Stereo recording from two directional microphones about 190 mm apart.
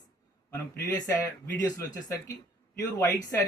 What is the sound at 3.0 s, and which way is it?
Speech, 15° left (ahead or behind).